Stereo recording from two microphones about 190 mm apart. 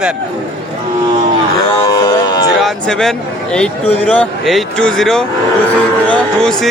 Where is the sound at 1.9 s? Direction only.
20° left (ahead or behind).